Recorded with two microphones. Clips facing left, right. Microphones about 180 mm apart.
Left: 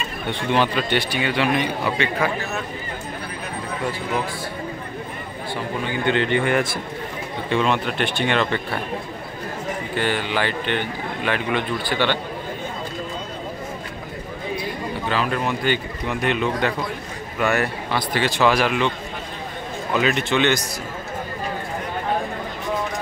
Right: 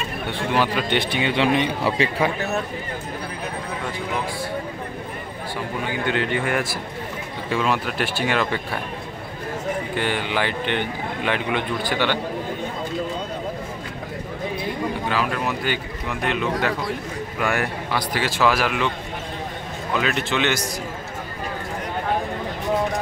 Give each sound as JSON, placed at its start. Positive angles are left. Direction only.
{"t": 0.3, "sound": "a man's voice", "side_deg": -5}
{"t": 0.8, "sound": "speech", "side_deg": -20}
{"t": 5.9, "sound": "speech", "side_deg": -5}
{"t": 9.9, "sound": "a man's voice", "side_deg": -15}
{"t": 15.3, "sound": "speech", "side_deg": -5}
{"t": 17.4, "sound": "speech", "side_deg": -10}
{"t": 19.9, "sound": "speech", "side_deg": 0}